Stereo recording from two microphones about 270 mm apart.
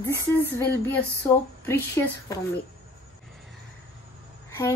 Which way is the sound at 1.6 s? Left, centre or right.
Centre.